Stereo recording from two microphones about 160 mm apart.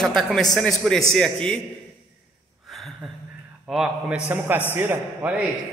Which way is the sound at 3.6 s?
5° right (ahead or behind).